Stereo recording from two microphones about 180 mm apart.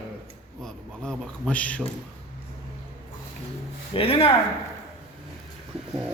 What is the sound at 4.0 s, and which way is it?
Speech, 30° left (ahead or behind).